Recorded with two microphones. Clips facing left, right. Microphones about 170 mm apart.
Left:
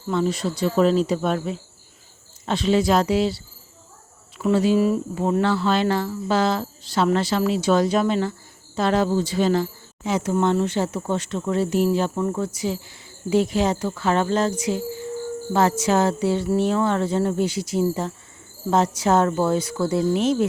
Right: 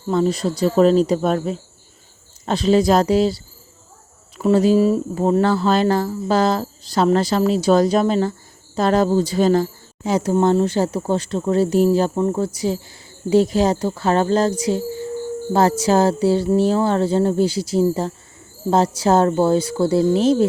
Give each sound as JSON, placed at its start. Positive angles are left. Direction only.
{"t": 0.1, "sound": "speech", "side_deg": -35}